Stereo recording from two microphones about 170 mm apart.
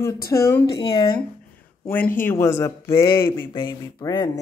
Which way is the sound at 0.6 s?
30° left (ahead or behind).